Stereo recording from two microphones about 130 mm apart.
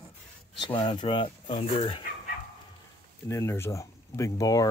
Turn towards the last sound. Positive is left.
turn(degrees=25)  # may be behind; listen again after turning